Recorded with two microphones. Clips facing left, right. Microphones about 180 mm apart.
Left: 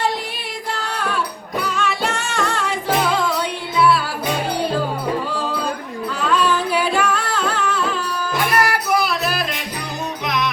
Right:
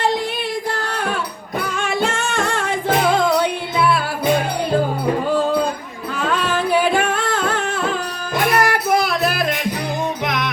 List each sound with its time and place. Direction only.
0.8 s music: 50° right (ahead or behind)
6.1 s music: 55° right (ahead or behind)